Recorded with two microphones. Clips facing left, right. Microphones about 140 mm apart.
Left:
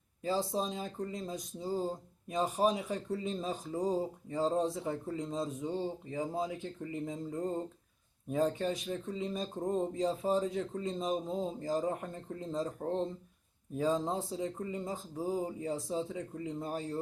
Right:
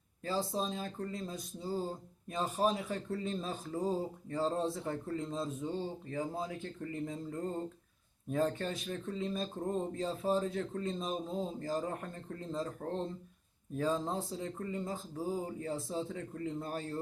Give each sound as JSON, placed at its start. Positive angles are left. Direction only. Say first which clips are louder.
{"t": 0.2, "sound": "speech", "louder": "left 2 dB", "side_deg": 15}